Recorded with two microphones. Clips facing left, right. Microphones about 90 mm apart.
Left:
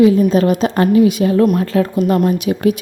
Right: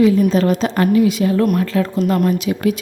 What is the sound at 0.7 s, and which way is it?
Speech, 25° left (ahead or behind).